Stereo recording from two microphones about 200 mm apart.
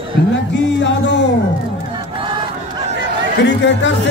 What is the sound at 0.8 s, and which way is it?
Music, 65° left (ahead or behind).